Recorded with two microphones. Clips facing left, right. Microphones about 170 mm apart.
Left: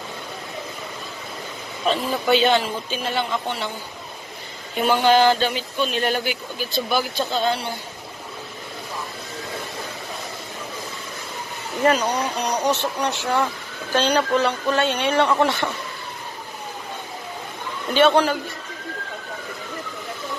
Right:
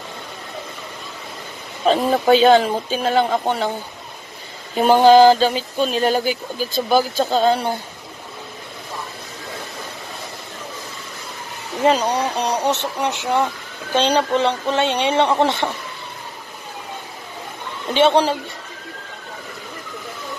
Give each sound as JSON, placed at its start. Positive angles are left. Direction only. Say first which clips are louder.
{"t": 1.9, "sound": "speech", "louder": "right 5 dB", "side_deg": -45}
{"t": 4.7, "sound": "speech", "louder": "right 6 dB", "side_deg": -40}
{"t": 12.0, "sound": "speech", "louder": "right 3 dB", "side_deg": -30}
{"t": 17.9, "sound": "speech", "louder": "right 1 dB", "side_deg": -25}